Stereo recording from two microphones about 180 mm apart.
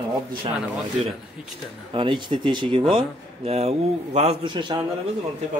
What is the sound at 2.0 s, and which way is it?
A man's voice, 25° right (ahead or behind).